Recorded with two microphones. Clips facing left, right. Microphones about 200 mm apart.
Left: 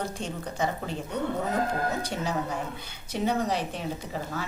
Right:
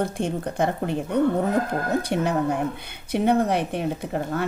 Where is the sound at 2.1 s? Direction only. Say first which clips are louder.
Right 7 dB; 60° right (ahead or behind).